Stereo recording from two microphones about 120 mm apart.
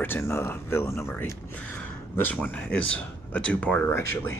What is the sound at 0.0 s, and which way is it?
Speech, 20° left (ahead or behind).